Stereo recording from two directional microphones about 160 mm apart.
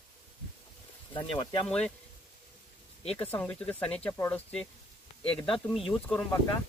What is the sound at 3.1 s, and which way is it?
Speech, 10° left (ahead or behind).